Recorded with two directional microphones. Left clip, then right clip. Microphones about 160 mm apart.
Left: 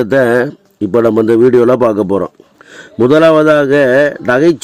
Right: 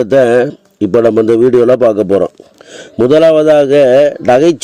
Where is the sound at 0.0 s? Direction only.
15° right (ahead or behind).